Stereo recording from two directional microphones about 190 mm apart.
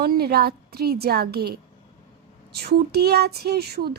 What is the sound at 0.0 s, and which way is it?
A woman's voice, 55° right (ahead or behind).